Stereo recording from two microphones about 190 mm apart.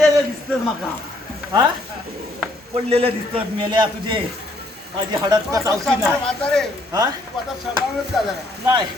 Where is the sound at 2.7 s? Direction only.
30° right (ahead or behind).